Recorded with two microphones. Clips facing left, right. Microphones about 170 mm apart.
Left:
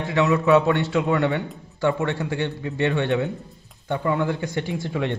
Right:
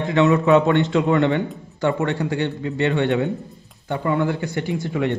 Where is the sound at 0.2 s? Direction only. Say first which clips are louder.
Right 2 dB; centre (ahead or behind).